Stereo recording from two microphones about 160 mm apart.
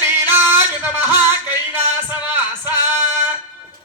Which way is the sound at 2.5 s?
25° left (ahead or behind).